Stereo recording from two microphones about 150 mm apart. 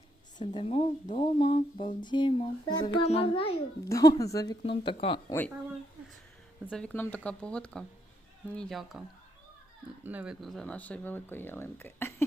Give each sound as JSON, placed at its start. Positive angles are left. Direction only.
{"t": 0.3, "sound": "speech", "side_deg": 35}
{"t": 1.0, "sound": "a sound", "side_deg": 55}
{"t": 1.4, "sound": "speech", "side_deg": 35}
{"t": 3.8, "sound": "speech", "side_deg": 20}
{"t": 4.6, "sound": "speech", "side_deg": 35}
{"t": 6.7, "sound": "speech", "side_deg": 5}
{"t": 10.4, "sound": "speech", "side_deg": 0}